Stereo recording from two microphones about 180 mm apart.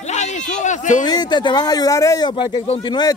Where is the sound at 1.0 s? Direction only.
20° left (ahead or behind).